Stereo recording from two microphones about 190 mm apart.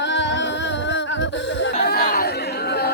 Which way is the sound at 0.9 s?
75° left (ahead or behind).